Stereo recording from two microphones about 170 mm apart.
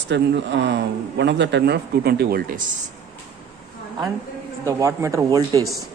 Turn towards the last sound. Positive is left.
turn(degrees=-20)  # may be behind; listen again after turning